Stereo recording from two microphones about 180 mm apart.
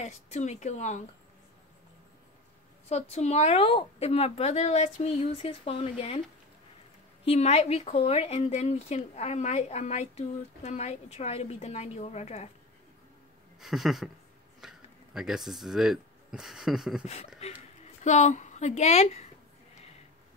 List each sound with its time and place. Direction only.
0.0 s speech: 40° left (ahead or behind)
2.9 s speech: 35° left (ahead or behind)
7.2 s speech: 35° left (ahead or behind)
13.6 s speech: centre (ahead or behind)
17.0 s speech: 40° left (ahead or behind)